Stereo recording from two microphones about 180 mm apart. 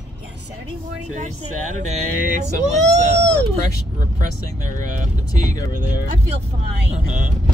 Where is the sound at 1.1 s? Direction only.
40° right (ahead or behind).